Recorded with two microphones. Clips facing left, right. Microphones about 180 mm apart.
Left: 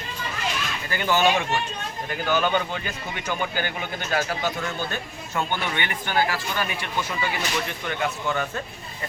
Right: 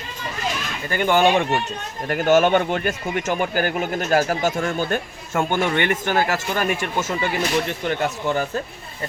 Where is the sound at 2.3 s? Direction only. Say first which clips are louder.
Right 7 dB; 75° right (ahead or behind).